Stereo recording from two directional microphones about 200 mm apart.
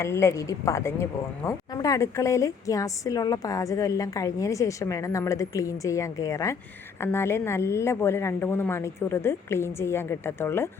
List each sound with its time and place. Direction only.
0.0 s a woman's voice: 15° left (ahead or behind)